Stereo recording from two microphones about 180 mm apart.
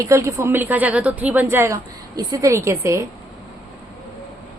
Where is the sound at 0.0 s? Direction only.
15° right (ahead or behind).